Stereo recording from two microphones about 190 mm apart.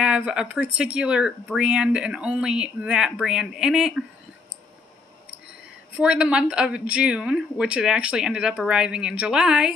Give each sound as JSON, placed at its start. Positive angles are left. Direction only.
{"t": 0.0, "sound": "speech", "side_deg": -5}
{"t": 5.9, "sound": "speech", "side_deg": -5}